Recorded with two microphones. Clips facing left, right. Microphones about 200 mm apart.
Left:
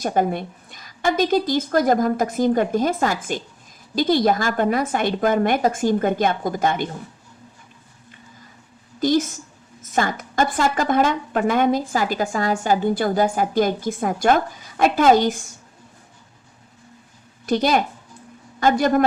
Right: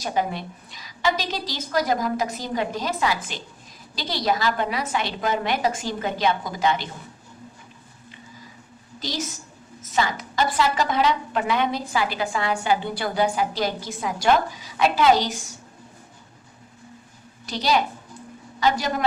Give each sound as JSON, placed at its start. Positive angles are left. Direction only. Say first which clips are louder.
{"t": 0.0, "sound": "a woman's voice", "louder": "left 5 dB", "side_deg": 50}
{"t": 9.0, "sound": "a woman's voice", "louder": "left 12 dB", "side_deg": 50}
{"t": 17.4, "sound": "a woman's voice", "louder": "left 4 dB", "side_deg": 50}